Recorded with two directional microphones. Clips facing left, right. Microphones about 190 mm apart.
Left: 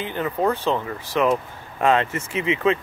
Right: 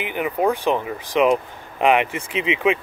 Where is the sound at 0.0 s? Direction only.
15° right (ahead or behind).